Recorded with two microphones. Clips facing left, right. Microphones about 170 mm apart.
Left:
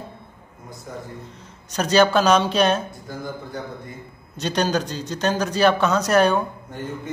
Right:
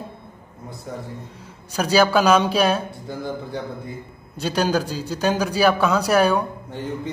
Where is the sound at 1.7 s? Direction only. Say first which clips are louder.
Even; 5° right (ahead or behind).